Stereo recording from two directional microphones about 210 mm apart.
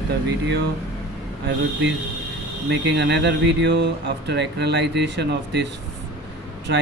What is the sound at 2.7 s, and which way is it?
Speech, 55° right (ahead or behind).